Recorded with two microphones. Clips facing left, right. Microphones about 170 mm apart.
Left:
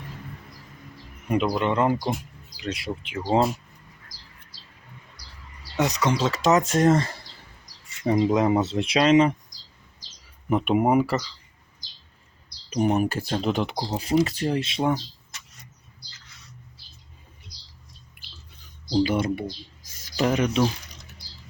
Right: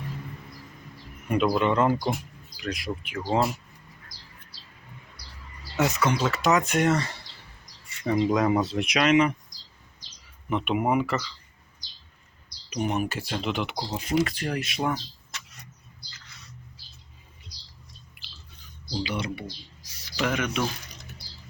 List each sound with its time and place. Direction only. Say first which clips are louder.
1.6 s speech: even; 20° left (ahead or behind)
5.7 s speech: left 1 dB; 20° left (ahead or behind)
6.7 s speech: left 4 dB; 40° left (ahead or behind)
8.0 s speech: left 2 dB; 25° left (ahead or behind)
10.5 s speech: left 4 dB; 40° left (ahead or behind)
12.7 s speech: left 5 dB; 35° left (ahead or behind)
19.0 s speech: left 7 dB; 50° left (ahead or behind); by 20.7 s 35° left (ahead or behind)